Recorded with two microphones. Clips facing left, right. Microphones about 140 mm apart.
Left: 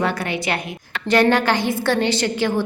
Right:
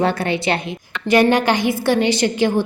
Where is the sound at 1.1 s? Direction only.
15° right (ahead or behind).